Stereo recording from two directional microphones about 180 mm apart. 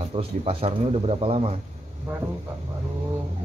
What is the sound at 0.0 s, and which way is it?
Speech, 30° right (ahead or behind).